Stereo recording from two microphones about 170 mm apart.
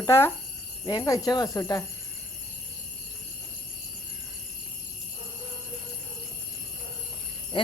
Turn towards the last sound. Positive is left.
turn(degrees=30)  # may be behind; listen again after turning